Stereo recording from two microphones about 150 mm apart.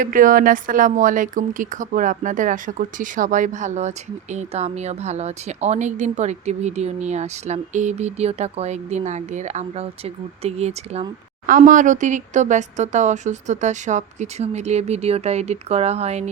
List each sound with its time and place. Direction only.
0.0 s speech: 60° right (ahead or behind); by 11.0 s 45° right (ahead or behind)
11.4 s speech: 60° right (ahead or behind); by 16.3 s 45° right (ahead or behind)